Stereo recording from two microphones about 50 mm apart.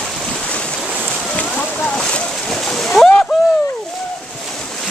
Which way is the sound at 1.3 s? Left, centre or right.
Left.